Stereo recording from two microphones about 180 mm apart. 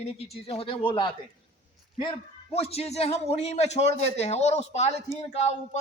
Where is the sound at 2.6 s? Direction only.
35° left (ahead or behind).